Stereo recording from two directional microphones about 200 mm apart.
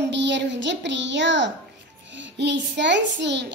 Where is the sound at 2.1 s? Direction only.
65° right (ahead or behind).